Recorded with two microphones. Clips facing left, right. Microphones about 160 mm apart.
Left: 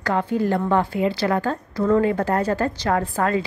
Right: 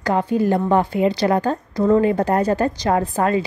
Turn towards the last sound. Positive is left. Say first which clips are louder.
# right 3 dB
turn(degrees=-20)  # may be behind; listen again after turning